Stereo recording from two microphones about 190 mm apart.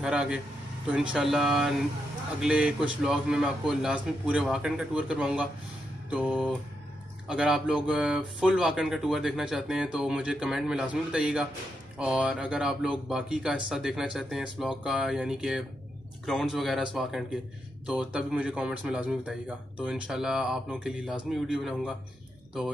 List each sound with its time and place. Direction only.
0.0 s a man's voice: 5° right (ahead or behind)